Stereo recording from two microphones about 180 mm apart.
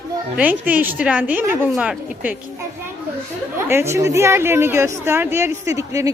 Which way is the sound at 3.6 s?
15° right (ahead or behind).